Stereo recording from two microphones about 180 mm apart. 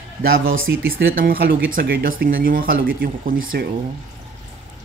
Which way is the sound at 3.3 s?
90° right.